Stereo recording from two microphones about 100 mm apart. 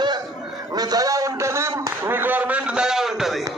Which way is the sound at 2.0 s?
20° right (ahead or behind).